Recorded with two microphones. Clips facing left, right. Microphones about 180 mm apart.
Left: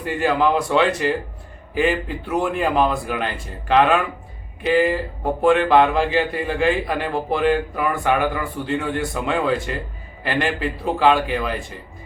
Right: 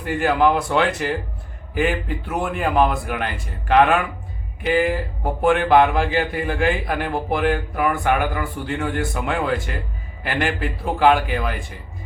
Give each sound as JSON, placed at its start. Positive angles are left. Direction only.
{"t": 0.0, "sound": "a man's voice", "side_deg": 0}